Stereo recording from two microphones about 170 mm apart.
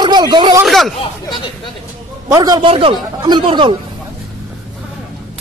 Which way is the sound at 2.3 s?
25° right (ahead or behind).